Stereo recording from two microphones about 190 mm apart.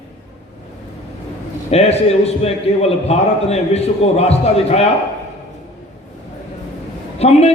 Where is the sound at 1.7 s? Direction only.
35° left (ahead or behind).